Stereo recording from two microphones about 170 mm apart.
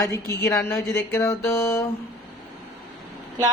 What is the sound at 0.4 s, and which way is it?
Speech, 15° left (ahead or behind).